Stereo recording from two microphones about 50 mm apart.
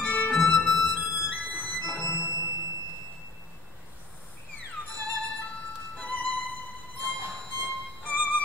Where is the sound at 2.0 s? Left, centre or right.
Left.